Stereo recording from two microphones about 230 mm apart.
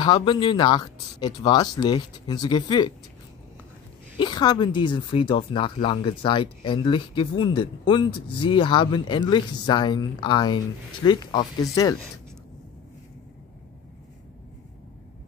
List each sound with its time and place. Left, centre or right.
0.0 s speech: left
4.2 s speech: centre